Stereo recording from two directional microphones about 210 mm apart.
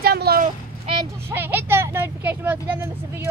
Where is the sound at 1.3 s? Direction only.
10° right (ahead or behind).